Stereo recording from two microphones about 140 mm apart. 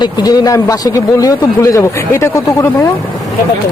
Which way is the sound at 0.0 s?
30° left (ahead or behind).